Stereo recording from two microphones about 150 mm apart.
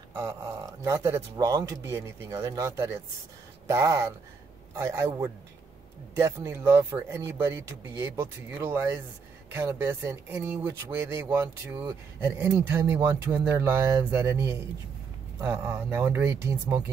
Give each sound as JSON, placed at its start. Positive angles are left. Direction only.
{"t": 0.1, "sound": "speech", "side_deg": -15}